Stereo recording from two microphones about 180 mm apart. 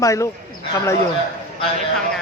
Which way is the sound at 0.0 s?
15° left (ahead or behind).